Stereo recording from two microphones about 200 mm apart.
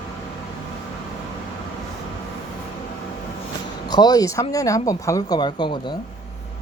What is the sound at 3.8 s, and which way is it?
Speech, 20° left (ahead or behind).